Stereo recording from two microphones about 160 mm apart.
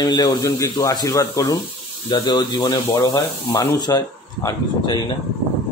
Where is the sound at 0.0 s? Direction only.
25° left (ahead or behind).